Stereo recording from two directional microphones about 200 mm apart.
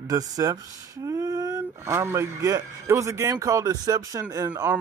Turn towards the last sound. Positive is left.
turn(degrees=-15)  # may be behind; listen again after turning